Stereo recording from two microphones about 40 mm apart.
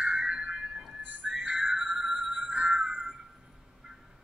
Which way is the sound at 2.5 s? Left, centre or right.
Right.